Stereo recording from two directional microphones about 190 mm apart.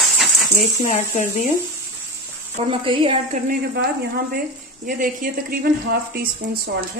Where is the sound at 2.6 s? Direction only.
30° right (ahead or behind).